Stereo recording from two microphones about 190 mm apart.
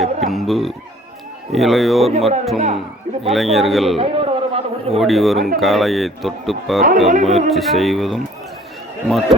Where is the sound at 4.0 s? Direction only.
30° right (ahead or behind).